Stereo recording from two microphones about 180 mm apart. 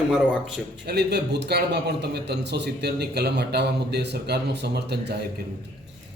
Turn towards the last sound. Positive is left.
turn(degrees=-65)  # may be behind; listen again after turning